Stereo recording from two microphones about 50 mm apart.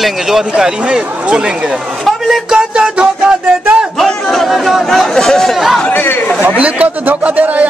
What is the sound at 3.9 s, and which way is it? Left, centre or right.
A man's voice, centre.